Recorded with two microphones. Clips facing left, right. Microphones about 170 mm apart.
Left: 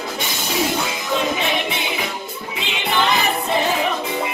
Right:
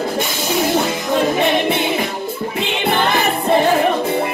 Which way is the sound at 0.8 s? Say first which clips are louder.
Right 5 dB; 50° right (ahead or behind).